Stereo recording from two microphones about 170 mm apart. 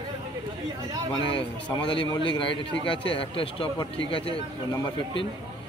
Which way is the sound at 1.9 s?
30° left (ahead or behind).